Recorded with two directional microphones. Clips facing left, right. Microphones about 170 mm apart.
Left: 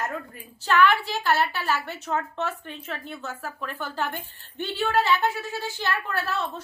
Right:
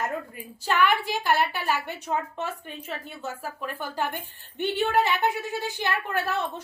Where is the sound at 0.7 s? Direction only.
15° right (ahead or behind).